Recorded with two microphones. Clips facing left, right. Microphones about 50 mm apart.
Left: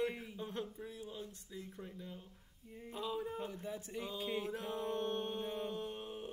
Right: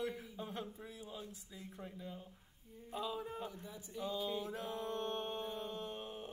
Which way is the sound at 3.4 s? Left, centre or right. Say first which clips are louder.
Left 4 dB; left.